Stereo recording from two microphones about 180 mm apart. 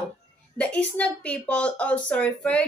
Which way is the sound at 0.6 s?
5° left (ahead or behind).